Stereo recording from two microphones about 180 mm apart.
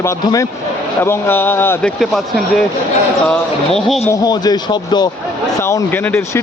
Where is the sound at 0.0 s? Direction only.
15° left (ahead or behind).